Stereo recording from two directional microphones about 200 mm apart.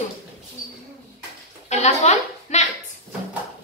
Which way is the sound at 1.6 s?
35° left (ahead or behind).